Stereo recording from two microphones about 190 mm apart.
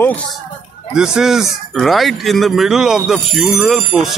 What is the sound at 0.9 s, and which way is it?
A man's voice, 5° right (ahead or behind).